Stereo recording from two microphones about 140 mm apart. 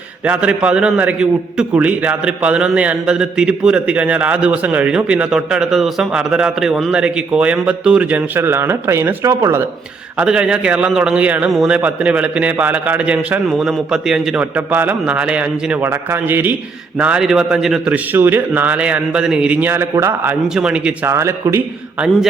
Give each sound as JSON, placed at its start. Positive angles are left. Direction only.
{"t": 0.3, "sound": "a man's voice", "side_deg": -10}
{"t": 10.2, "sound": "a man's voice", "side_deg": -5}
{"t": 21.1, "sound": "speech", "side_deg": -20}